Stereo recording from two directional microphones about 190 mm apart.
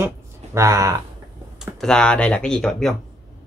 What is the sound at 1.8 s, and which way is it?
Speech, 5° left (ahead or behind).